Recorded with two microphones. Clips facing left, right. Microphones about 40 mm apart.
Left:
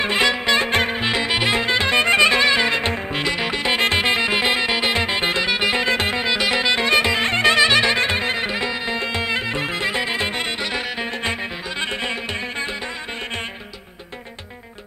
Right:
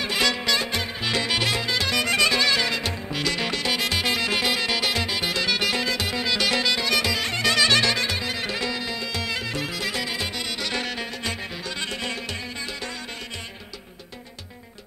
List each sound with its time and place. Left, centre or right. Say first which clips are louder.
0.0 s music: left 5 dB; left
1.0 s music: left 4 dB; left
3.3 s music: left 3 dB; left
3.7 s music: left 8 dB; left
6.7 s music: left 6 dB; left
8.5 s music: left 4 dB; left
11.8 s music: left 6 dB; left